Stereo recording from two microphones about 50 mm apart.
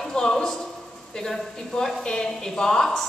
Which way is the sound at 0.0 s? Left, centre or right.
Centre.